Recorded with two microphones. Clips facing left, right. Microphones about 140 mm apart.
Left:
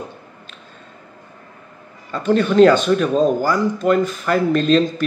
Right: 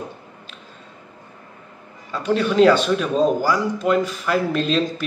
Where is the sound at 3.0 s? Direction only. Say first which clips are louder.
Left 2 dB; 5° right (ahead or behind).